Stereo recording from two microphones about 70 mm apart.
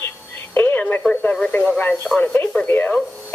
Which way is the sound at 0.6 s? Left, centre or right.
Left.